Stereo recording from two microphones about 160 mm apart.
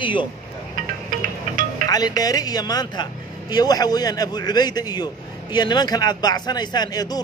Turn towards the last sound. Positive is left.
turn(degrees=25)  # may be behind; listen again after turning